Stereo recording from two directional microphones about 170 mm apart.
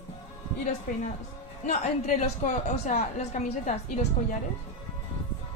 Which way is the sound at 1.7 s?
40° left (ahead or behind).